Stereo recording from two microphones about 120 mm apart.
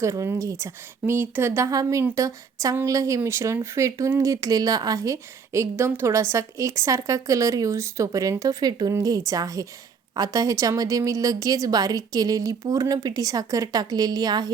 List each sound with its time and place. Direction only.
0.0 s speech: 25° right (ahead or behind)